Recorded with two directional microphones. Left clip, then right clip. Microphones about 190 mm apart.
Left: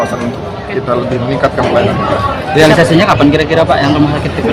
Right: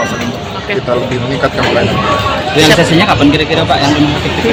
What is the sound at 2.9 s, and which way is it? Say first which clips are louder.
Speech: left 1 dB; 55° left (ahead or behind).